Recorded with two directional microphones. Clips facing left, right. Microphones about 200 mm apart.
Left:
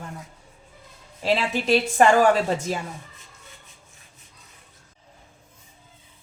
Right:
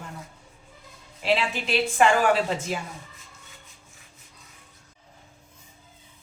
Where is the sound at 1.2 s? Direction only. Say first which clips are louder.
Left 2 dB; 40° left (ahead or behind).